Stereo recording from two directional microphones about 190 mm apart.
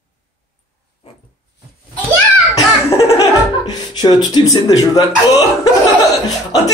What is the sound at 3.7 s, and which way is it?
Speech, 20° left (ahead or behind).